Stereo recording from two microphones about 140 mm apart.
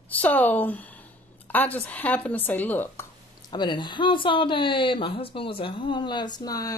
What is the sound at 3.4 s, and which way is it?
Speech, 35° left (ahead or behind).